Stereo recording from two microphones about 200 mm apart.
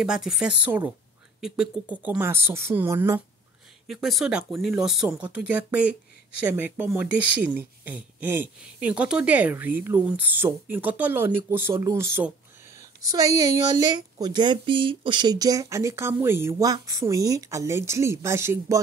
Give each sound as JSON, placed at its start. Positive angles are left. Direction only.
{"t": 0.0, "sound": "speech", "side_deg": -5}
{"t": 3.8, "sound": "speech", "side_deg": 0}